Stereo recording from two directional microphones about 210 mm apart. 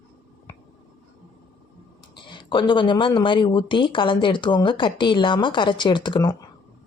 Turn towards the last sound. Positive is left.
turn(degrees=20)  # may be behind; listen again after turning